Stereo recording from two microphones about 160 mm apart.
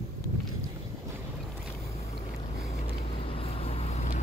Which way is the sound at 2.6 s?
45° left (ahead or behind).